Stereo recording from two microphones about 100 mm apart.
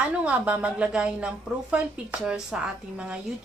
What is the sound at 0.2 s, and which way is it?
A woman's voice, 15° right (ahead or behind).